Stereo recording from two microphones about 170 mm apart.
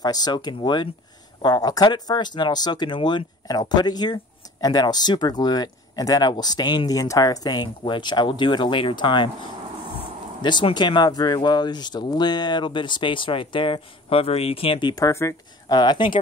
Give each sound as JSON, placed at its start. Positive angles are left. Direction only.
{"t": 0.0, "sound": "speech", "side_deg": 25}
{"t": 10.4, "sound": "speech", "side_deg": 25}